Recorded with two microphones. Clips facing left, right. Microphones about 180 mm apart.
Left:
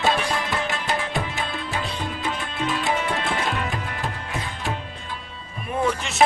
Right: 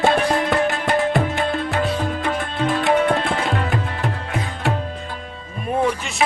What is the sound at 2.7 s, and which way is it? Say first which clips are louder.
Tabla: right 8 dB; 60° right (ahead or behind).